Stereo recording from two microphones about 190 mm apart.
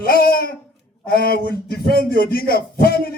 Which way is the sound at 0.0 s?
50° left (ahead or behind).